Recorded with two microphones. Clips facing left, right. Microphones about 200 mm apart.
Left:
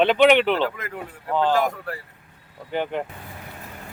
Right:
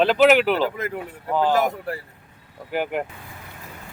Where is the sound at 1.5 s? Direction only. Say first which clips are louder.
Right 1 dB; 25° right (ahead or behind).